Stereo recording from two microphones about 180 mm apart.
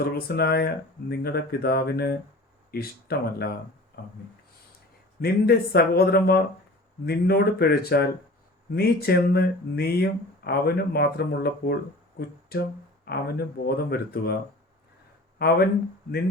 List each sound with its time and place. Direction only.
0.0 s speech: 60° left (ahead or behind)
5.2 s speech: 60° left (ahead or behind)
15.4 s speech: 60° left (ahead or behind)